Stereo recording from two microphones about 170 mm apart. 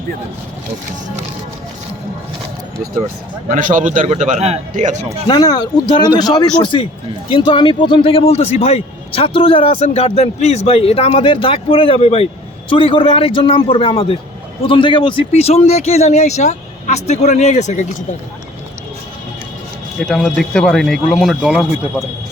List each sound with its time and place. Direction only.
3.5 s a man's voice: 50° right (ahead or behind)
5.3 s a man's voice: 25° left (ahead or behind); by 17.8 s 45° left (ahead or behind)
20.0 s speech: 5° left (ahead or behind)